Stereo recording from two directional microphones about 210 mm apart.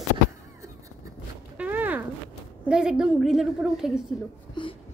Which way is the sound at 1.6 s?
10° right (ahead or behind).